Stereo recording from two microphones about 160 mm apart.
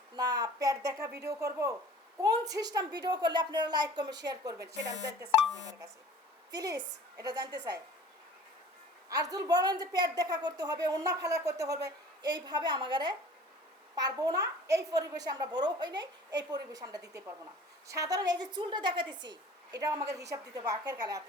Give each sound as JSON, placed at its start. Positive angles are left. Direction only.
{"t": 0.2, "sound": "a woman's voice", "side_deg": -25}
{"t": 6.5, "sound": "a woman's voice", "side_deg": -25}
{"t": 9.0, "sound": "a woman's voice", "side_deg": -25}